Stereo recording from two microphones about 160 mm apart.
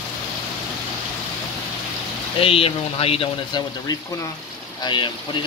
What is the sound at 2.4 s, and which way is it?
Speech, 35° left (ahead or behind).